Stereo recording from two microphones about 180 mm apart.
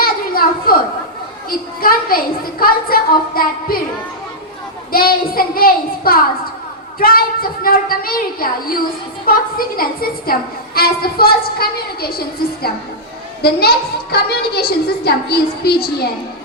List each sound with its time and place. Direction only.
0.0 s a sound: 55° left (ahead or behind)
1.5 s a woman's voice: 55° left (ahead or behind)
4.9 s a woman's voice: 55° left (ahead or behind)
13.4 s a woman's voice: 60° left (ahead or behind)